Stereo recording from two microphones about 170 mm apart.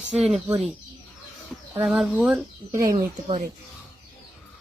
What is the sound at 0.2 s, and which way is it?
Speech, centre (ahead or behind).